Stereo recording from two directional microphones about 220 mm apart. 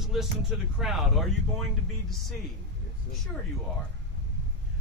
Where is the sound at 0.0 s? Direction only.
Centre (ahead or behind).